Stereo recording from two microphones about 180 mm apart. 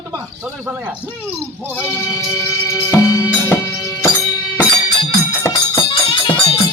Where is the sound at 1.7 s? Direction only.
10° left (ahead or behind).